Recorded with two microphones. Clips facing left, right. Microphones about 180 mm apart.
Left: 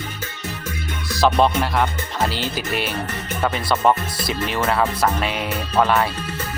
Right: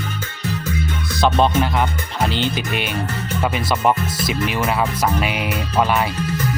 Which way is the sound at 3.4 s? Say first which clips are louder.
Even; 10° right (ahead or behind).